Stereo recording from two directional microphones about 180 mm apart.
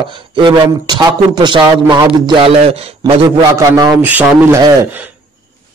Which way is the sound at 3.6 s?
15° right (ahead or behind).